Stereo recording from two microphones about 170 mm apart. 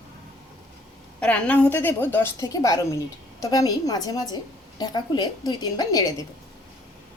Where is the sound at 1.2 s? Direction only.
5° left (ahead or behind).